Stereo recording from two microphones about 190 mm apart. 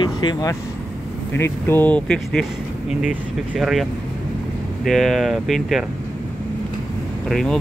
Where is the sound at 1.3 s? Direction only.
10° left (ahead or behind).